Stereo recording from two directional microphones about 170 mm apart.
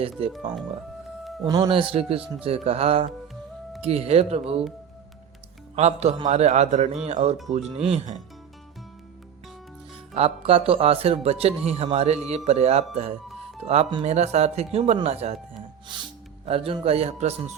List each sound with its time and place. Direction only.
1.5 s speech: 25° right (ahead or behind)
5.7 s a man's voice: 40° right (ahead or behind)
10.2 s speech: 35° right (ahead or behind)
16.5 s speech: 35° right (ahead or behind)